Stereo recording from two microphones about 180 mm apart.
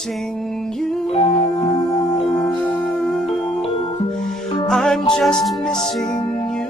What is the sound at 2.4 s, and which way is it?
Music, 10° left (ahead or behind).